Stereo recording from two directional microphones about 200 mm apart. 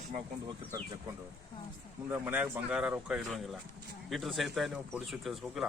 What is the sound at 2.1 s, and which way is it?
Speech, 10° right (ahead or behind).